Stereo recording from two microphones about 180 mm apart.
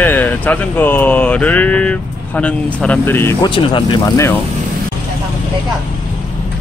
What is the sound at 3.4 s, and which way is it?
Speech, 25° left (ahead or behind).